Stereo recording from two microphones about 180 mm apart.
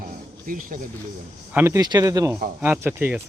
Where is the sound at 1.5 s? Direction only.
10° right (ahead or behind).